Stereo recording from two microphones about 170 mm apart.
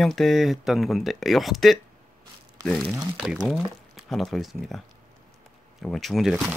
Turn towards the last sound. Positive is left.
turn(degrees=-5)  # may be behind; listen again after turning